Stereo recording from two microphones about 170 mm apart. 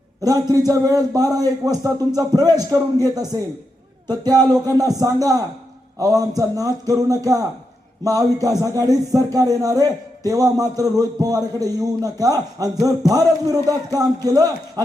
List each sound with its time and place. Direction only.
0.2 s a man's voice: 20° right (ahead or behind)